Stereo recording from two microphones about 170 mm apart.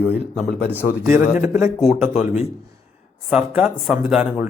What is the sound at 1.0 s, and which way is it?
Speech, 10° right (ahead or behind).